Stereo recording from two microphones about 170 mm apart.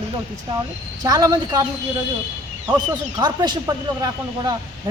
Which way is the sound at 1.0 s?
20° right (ahead or behind).